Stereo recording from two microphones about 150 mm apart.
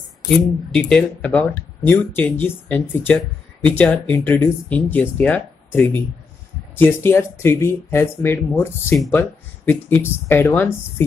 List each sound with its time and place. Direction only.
0.7 s speech: 5° left (ahead or behind)